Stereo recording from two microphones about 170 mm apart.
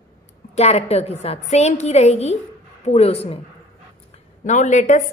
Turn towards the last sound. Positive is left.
turn(degrees=45)  # may be behind; listen again after turning